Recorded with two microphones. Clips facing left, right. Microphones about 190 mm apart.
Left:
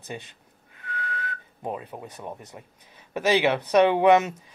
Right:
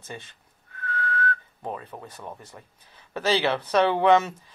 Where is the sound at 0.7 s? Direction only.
15° left (ahead or behind).